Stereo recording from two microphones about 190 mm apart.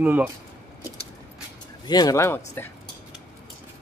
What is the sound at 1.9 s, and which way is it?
Speech, 20° left (ahead or behind).